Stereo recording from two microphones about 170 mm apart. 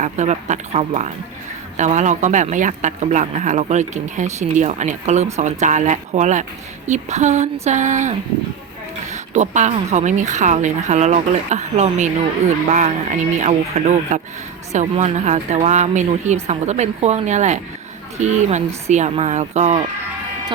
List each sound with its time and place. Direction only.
0.0 s a man's voice: 45° right (ahead or behind)